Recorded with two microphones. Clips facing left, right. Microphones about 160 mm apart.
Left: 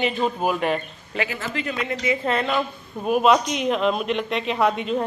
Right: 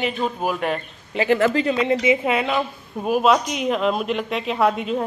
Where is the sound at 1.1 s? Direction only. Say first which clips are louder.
Right 9 dB; 20° right (ahead or behind).